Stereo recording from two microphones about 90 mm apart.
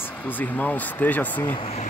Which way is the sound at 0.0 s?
20° left (ahead or behind).